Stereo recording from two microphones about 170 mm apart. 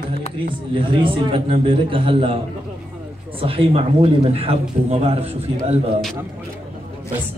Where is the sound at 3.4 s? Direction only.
35° right (ahead or behind).